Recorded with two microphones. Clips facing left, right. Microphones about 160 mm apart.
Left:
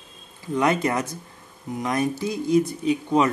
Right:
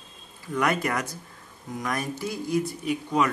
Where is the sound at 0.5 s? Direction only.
20° left (ahead or behind).